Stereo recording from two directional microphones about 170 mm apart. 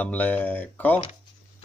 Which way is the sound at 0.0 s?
10° left (ahead or behind).